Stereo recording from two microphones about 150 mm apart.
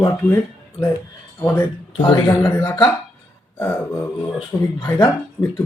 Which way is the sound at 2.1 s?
15° left (ahead or behind).